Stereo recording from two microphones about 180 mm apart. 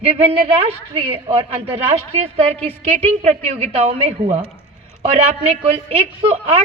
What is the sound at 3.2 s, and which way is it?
A man's voice, 35° right (ahead or behind).